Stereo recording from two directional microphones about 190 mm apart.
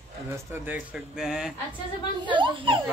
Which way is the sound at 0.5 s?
5° right (ahead or behind).